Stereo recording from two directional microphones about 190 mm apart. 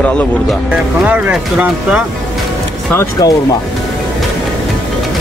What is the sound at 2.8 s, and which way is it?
Speech, 15° left (ahead or behind).